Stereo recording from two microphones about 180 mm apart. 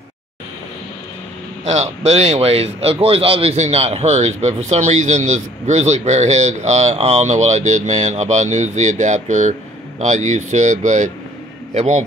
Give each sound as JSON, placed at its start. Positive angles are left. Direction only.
{"t": 1.7, "sound": "a man's voice", "side_deg": -40}